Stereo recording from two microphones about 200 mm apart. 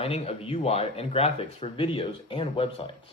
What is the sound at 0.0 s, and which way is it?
Speech, 30° left (ahead or behind).